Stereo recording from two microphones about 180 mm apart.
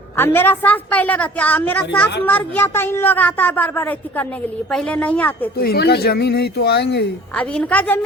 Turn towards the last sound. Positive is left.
turn(degrees=5)  # may be behind; listen again after turning